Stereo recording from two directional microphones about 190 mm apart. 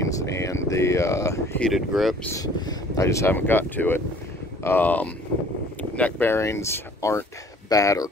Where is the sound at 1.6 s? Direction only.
Centre (ahead or behind).